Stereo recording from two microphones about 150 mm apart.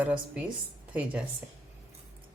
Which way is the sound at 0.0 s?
10° right (ahead or behind).